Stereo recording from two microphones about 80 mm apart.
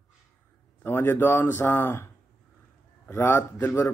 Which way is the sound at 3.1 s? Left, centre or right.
Left.